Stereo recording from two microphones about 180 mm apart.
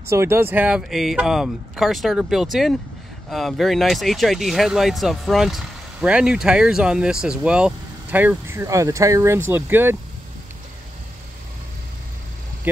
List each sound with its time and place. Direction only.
0.0 s speech: 15° right (ahead or behind)